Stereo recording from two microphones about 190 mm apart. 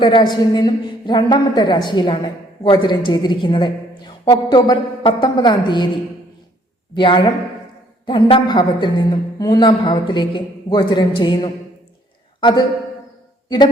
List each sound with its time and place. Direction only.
0.0 s a woman's voice: 25° left (ahead or behind)
6.9 s a woman's voice: 25° left (ahead or behind)